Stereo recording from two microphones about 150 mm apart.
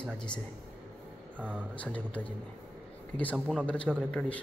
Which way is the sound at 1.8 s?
10° left (ahead or behind).